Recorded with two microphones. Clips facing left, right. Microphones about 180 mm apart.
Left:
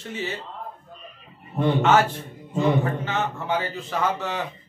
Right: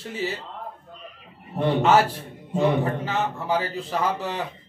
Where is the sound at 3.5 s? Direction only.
35° right (ahead or behind).